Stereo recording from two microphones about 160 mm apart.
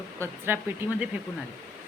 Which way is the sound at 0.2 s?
15° right (ahead or behind).